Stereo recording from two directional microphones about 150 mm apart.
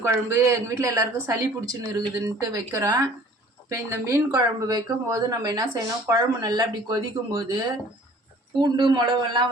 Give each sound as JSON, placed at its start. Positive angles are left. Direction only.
{"t": 0.0, "sound": "speech", "side_deg": -20}
{"t": 8.6, "sound": "speech", "side_deg": -30}